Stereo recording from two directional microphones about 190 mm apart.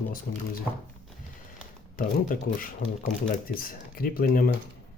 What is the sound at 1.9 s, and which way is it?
Speech, 45° left (ahead or behind).